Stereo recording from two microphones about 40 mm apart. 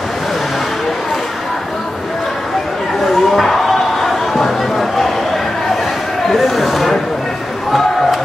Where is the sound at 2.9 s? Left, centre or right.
Centre.